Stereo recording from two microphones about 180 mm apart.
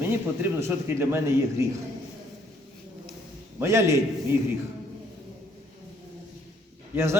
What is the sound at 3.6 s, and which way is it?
Speech, 15° right (ahead or behind).